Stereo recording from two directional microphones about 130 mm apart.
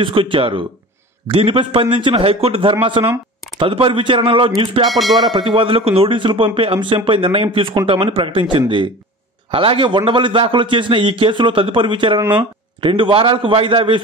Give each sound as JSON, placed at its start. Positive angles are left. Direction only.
{"t": 0.0, "sound": "a man's voice", "side_deg": -40}